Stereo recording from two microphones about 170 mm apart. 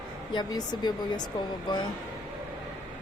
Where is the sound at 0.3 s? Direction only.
25° left (ahead or behind).